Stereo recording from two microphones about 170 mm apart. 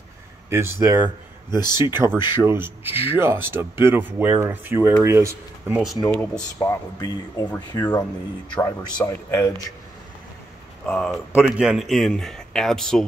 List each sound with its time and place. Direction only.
0.5 s speech: 15° right (ahead or behind)
1.5 s speech: 25° left (ahead or behind)
1.8 s speech: 15° right (ahead or behind)
5.9 s a man's voice: centre (ahead or behind)
6.6 s speech: 20° left (ahead or behind)
10.9 s a man's voice: centre (ahead or behind)